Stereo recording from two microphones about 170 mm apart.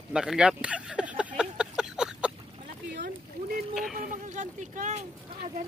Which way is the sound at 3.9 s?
50° right (ahead or behind).